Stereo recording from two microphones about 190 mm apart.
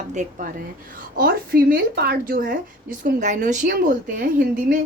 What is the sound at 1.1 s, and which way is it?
A woman's voice, 50° right (ahead or behind).